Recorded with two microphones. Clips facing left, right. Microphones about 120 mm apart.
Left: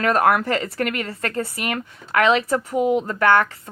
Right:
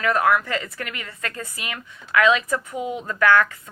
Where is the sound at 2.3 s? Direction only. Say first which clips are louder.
Left 2 dB; 30° left (ahead or behind).